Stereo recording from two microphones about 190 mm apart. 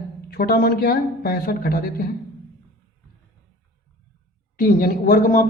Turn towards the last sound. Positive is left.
turn(degrees=45)  # may be behind; listen again after turning